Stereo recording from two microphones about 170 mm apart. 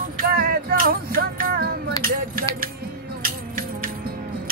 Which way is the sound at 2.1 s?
55° right (ahead or behind).